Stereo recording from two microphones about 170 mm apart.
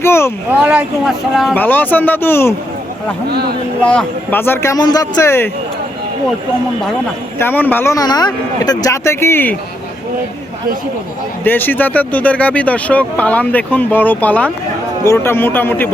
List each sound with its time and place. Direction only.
0.0 s speech: 15° left (ahead or behind)
0.6 s speech: 5° right (ahead or behind)
1.5 s speech: 10° left (ahead or behind)
3.2 s speech: 70° right (ahead or behind)
3.8 s speech: 10° left (ahead or behind)
7.3 s speech: 10° left (ahead or behind)
11.4 s speech: 10° left (ahead or behind)